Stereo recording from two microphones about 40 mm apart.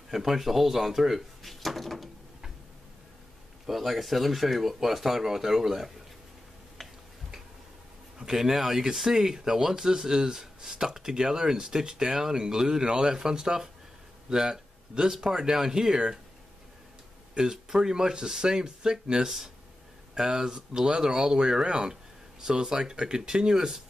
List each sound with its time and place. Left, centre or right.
0.1 s speech: centre
3.6 s speech: centre
6.8 s tick-tock: centre
8.2 s speech: centre
17.3 s speech: centre